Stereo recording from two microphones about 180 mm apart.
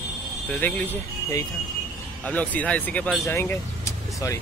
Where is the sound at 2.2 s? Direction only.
10° left (ahead or behind).